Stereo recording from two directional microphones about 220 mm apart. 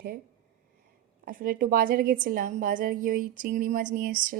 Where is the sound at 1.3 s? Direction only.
40° right (ahead or behind).